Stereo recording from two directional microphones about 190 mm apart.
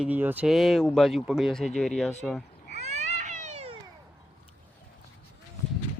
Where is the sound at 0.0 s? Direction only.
10° right (ahead or behind).